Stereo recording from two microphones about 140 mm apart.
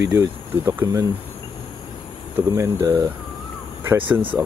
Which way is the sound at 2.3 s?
20° right (ahead or behind).